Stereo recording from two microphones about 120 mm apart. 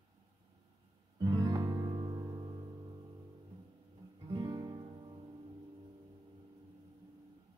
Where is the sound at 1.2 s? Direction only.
35° right (ahead or behind).